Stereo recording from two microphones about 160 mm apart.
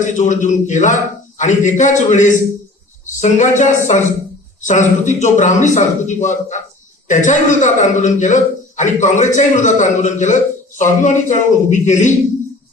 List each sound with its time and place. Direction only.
0.0 s a man's voice: 50° left (ahead or behind)